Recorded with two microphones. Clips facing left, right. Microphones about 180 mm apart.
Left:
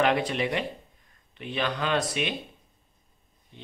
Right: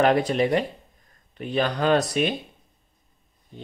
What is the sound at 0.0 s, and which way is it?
A man's voice, 40° right (ahead or behind).